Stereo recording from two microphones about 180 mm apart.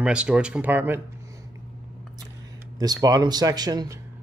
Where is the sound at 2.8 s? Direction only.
20° right (ahead or behind).